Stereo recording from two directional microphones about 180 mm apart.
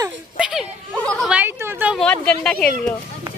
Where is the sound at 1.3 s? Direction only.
10° right (ahead or behind).